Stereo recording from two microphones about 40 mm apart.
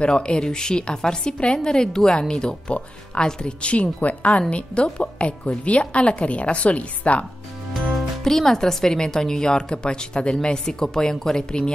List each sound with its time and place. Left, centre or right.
0.1 s a woman's voice: left
8.2 s speech: centre